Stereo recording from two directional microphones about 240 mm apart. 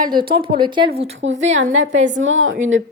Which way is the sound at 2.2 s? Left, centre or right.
Right.